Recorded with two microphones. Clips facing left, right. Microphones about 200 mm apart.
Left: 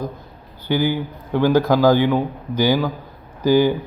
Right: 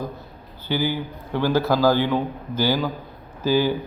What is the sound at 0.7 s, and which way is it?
A man's voice, 15° left (ahead or behind).